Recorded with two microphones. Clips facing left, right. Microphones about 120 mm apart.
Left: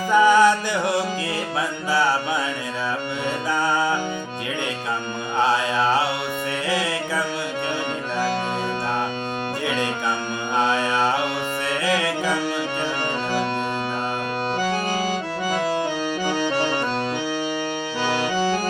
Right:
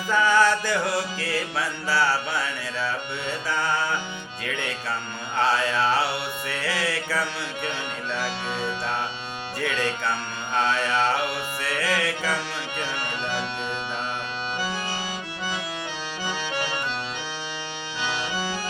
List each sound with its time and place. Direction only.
0.1 s music: 15° left (ahead or behind)
5.4 s mantra: 15° left (ahead or behind)
6.7 s music: 20° left (ahead or behind)
9.6 s music: 15° left (ahead or behind)
10.6 s mantra: 15° left (ahead or behind)
11.7 s music: 20° left (ahead or behind)
18.1 s accordion: 55° left (ahead or behind)